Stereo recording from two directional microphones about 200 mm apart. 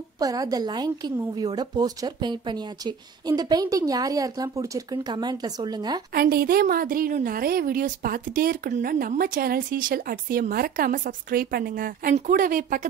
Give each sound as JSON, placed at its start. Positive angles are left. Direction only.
{"t": 0.2, "sound": "a woman's voice", "side_deg": -20}
{"t": 6.1, "sound": "a woman's voice", "side_deg": -50}